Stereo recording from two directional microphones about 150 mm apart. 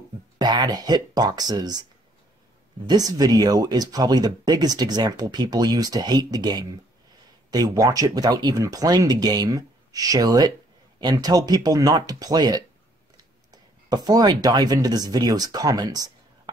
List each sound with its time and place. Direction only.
0.4 s speech: 25° right (ahead or behind)
2.9 s speech: 25° right (ahead or behind)